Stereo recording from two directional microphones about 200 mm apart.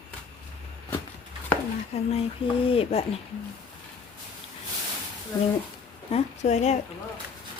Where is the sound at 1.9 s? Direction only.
30° left (ahead or behind).